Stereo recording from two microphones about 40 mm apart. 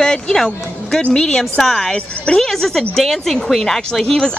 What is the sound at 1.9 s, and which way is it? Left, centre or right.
Speech, left.